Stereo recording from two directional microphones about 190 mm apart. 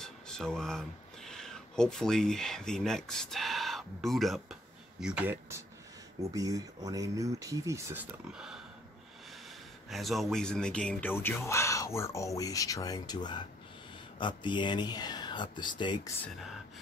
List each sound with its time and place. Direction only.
0.0 s speech: 5° left (ahead or behind)
9.8 s speech: centre (ahead or behind); by 16.1 s 25° left (ahead or behind)